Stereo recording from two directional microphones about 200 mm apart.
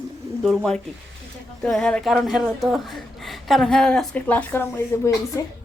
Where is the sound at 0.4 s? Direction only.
5° left (ahead or behind).